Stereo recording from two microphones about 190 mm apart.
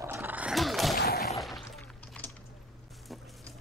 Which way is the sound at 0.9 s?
55° left (ahead or behind).